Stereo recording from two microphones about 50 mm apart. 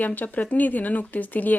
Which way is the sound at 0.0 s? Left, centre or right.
Left.